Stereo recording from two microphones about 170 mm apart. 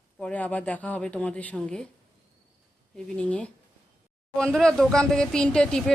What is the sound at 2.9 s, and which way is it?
Speech, 5° left (ahead or behind).